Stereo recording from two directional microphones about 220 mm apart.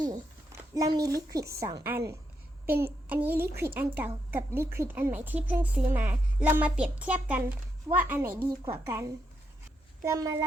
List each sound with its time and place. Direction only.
0.0 s a woman's voice: 15° right (ahead or behind)